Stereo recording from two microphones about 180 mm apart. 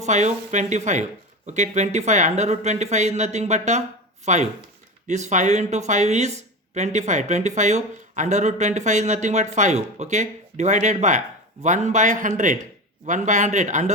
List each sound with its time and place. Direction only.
0.0 s speech: 40° right (ahead or behind)